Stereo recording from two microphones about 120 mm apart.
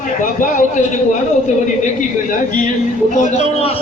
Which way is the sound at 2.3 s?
90° left.